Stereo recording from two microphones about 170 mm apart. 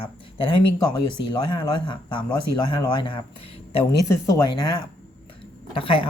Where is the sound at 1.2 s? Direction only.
30° left (ahead or behind).